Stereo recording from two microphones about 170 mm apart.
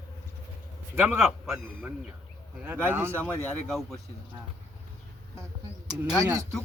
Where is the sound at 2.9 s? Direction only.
15° right (ahead or behind).